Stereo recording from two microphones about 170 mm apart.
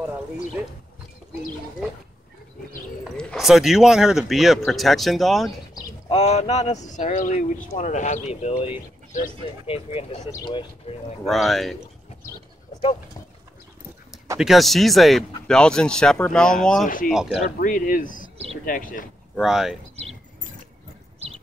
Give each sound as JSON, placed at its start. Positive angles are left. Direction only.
{"t": 3.2, "sound": "speech", "side_deg": 0}
{"t": 6.0, "sound": "a man's voice", "side_deg": 35}
{"t": 9.7, "sound": "speech", "side_deg": 35}
{"t": 11.2, "sound": "speech", "side_deg": 0}
{"t": 14.4, "sound": "speech", "side_deg": 0}
{"t": 16.8, "sound": "a man's voice", "side_deg": 55}
{"t": 17.1, "sound": "speech", "side_deg": -5}
{"t": 17.6, "sound": "a man's voice", "side_deg": 50}
{"t": 19.3, "sound": "speech", "side_deg": 0}